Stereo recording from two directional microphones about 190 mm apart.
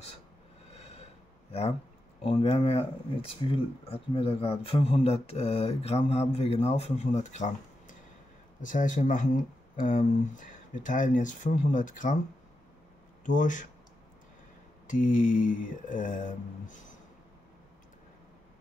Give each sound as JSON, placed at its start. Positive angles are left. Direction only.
{"t": 2.2, "sound": "speech", "side_deg": 30}
{"t": 13.2, "sound": "speech", "side_deg": 40}
{"t": 14.9, "sound": "speech", "side_deg": 45}